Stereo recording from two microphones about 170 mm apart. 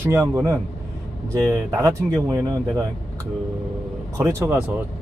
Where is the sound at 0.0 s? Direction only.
15° right (ahead or behind).